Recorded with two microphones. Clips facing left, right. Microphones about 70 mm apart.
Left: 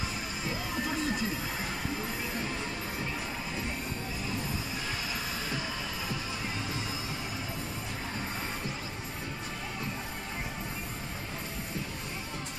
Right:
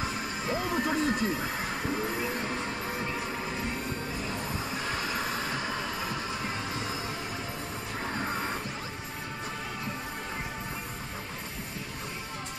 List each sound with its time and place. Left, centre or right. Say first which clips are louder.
0.0 s music: right 3 dB; right
4.8 s music: right 4 dB; right